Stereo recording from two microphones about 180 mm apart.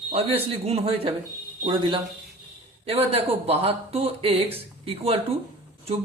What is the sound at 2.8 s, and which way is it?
Speech, 35° right (ahead or behind).